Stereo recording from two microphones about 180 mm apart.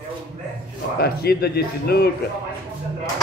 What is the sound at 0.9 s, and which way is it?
Speech, 60° left (ahead or behind).